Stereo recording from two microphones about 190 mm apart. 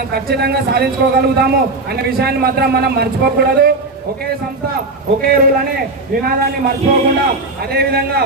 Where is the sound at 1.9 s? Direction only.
55° right (ahead or behind).